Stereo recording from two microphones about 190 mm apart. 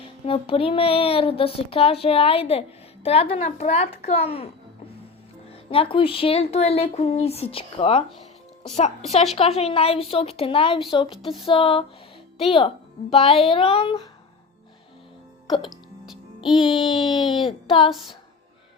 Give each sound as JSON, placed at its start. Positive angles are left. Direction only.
{"t": 0.3, "sound": "speech", "side_deg": 30}
{"t": 5.5, "sound": "speech", "side_deg": 30}
{"t": 11.1, "sound": "music", "side_deg": 0}
{"t": 11.4, "sound": "speech", "side_deg": 30}
{"t": 16.5, "sound": "music", "side_deg": 0}
{"t": 16.8, "sound": "speech", "side_deg": 25}